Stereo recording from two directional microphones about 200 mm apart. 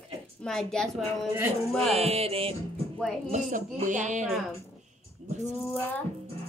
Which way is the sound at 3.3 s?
40° right (ahead or behind).